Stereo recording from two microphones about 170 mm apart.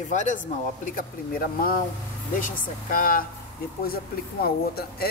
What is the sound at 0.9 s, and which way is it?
Speech, 55° left (ahead or behind).